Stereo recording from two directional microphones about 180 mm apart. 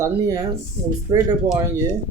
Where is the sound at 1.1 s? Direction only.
20° right (ahead or behind).